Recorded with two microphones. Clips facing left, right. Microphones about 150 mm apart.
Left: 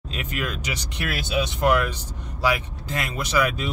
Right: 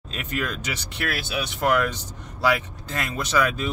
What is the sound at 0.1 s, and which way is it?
Speech, 10° left (ahead or behind).